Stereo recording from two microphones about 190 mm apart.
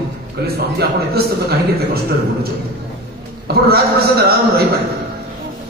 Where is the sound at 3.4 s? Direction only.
55° right (ahead or behind).